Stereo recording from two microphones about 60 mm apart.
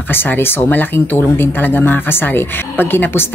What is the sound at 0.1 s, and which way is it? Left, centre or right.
Speech, left.